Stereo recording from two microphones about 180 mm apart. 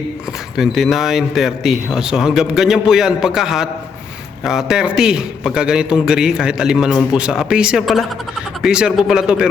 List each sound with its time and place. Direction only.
0.5 s speech: centre (ahead or behind)